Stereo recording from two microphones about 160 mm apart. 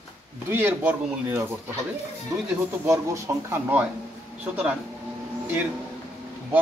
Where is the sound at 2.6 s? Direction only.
15° right (ahead or behind).